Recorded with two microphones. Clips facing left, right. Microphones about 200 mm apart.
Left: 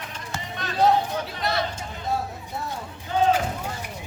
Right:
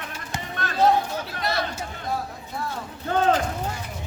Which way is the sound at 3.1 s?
55° right (ahead or behind).